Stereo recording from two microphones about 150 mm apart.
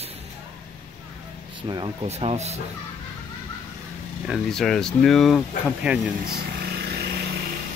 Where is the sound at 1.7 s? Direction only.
30° right (ahead or behind).